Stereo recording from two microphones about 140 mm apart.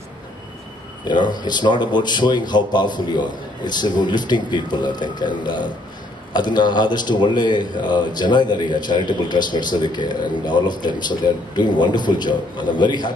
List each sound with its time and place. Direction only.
1.0 s a man's voice: 30° left (ahead or behind)